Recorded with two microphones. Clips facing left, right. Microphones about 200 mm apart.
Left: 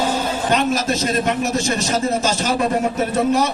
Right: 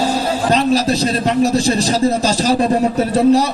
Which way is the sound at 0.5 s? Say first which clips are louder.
Right 4 dB; 35° right (ahead or behind).